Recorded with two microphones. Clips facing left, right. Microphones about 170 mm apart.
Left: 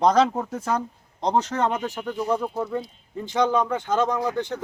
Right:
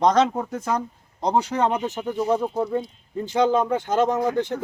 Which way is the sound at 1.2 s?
10° right (ahead or behind).